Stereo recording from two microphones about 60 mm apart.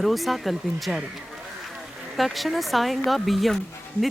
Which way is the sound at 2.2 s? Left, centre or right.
Centre.